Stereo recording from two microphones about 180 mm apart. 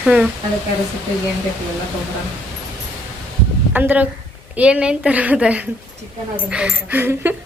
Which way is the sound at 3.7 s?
10° right (ahead or behind).